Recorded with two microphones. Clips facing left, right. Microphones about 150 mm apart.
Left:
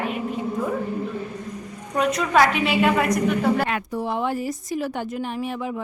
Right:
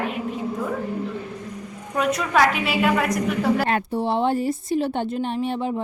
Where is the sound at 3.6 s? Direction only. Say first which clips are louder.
Right 3 dB; 30° right (ahead or behind).